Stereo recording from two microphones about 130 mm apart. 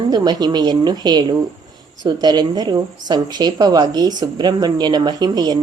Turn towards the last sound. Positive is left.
turn(degrees=-30)  # may be behind; listen again after turning